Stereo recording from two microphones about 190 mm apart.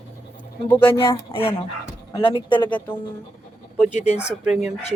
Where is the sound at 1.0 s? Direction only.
30° left (ahead or behind).